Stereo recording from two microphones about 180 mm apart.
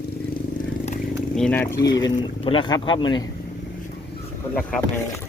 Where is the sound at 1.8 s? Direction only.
25° left (ahead or behind).